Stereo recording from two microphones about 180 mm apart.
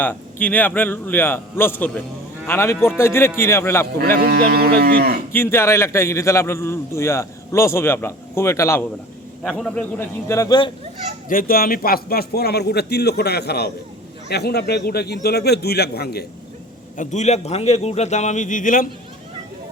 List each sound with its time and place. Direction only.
0.0 s a man's voice: 10° left (ahead or behind)
4.2 s speech: 60° right (ahead or behind)
5.3 s a man's voice: 10° left (ahead or behind)
9.4 s a man's voice: centre (ahead or behind); by 10.7 s 20° left (ahead or behind)
11.3 s a man's voice: 50° left (ahead or behind)
17.0 s a man's voice: 40° left (ahead or behind)